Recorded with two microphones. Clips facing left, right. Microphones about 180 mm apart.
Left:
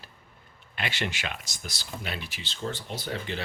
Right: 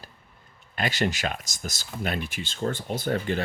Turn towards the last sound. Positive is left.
turn(degrees=-50)  # may be behind; listen again after turning